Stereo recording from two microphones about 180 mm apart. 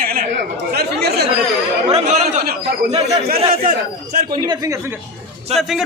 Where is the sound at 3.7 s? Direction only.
50° right (ahead or behind).